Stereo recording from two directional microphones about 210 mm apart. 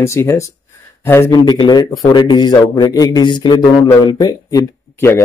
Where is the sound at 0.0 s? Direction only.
15° left (ahead or behind).